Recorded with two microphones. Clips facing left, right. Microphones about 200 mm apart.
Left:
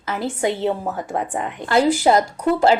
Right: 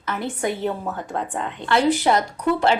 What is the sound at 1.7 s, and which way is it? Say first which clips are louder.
Speech: left 2 dB; 40° left (ahead or behind).